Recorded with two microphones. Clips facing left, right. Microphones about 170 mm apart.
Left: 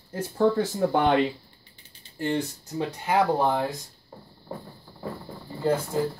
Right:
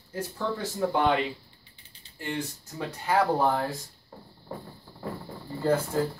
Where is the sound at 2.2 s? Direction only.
40° left (ahead or behind).